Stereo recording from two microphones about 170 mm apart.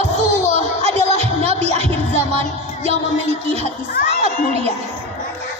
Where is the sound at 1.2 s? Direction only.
40° right (ahead or behind).